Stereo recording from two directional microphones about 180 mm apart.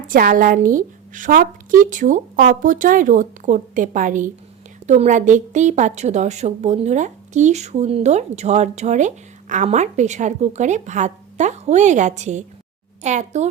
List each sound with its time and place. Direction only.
0.1 s a woman's voice: 50° right (ahead or behind)